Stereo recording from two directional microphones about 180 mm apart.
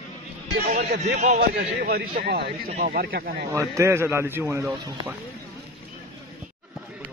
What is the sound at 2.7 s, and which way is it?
Speech, 40° right (ahead or behind).